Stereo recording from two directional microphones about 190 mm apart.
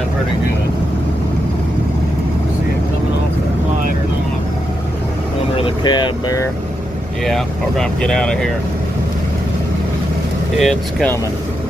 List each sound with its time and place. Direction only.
5.6 s speech: 25° left (ahead or behind)
7.2 s speech: centre (ahead or behind)
10.6 s speech: 5° left (ahead or behind)